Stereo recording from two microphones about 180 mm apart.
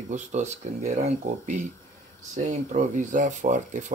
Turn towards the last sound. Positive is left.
turn(degrees=-45)  # may be behind; listen again after turning